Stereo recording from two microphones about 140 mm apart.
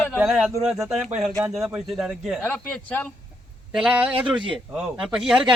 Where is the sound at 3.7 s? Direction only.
10° right (ahead or behind).